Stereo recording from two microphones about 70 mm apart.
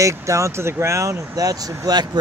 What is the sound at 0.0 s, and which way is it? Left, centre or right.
Speech, right.